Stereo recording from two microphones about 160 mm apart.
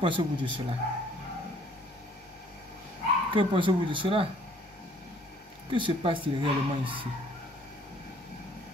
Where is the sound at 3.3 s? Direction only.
30° right (ahead or behind).